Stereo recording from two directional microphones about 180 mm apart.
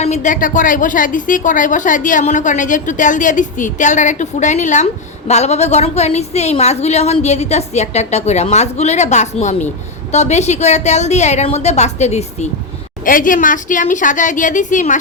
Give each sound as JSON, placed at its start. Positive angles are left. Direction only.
{"t": 0.0, "sound": "a woman's voice", "side_deg": 40}